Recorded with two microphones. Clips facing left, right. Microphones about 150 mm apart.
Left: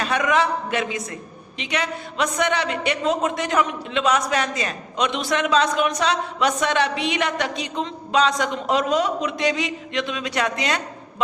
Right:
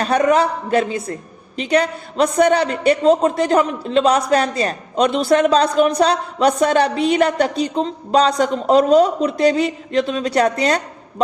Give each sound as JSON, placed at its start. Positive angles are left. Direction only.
{"t": 0.0, "sound": "a man's voice", "side_deg": -40}